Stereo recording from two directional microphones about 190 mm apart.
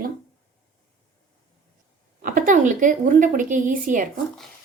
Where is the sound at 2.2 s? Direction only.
45° right (ahead or behind).